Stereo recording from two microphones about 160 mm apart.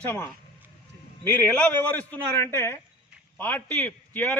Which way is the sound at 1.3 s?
10° left (ahead or behind).